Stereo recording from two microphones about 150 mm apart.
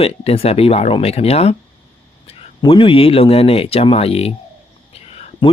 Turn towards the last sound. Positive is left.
turn(degrees=45)  # may be behind; listen again after turning